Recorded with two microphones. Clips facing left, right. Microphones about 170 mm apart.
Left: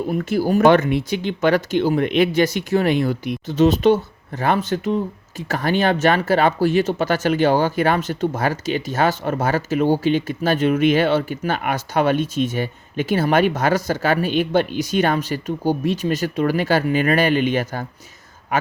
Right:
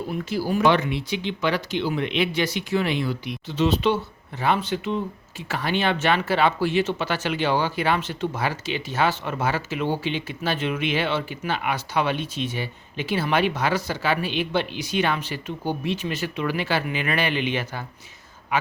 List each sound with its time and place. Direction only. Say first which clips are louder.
0.1 s speech: left 6 dB; 50° left (ahead or behind)